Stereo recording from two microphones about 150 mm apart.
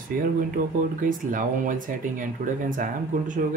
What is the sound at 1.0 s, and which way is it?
Speech, 60° right (ahead or behind).